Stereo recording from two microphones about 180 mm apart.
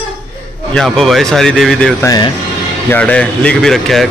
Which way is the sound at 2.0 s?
25° left (ahead or behind).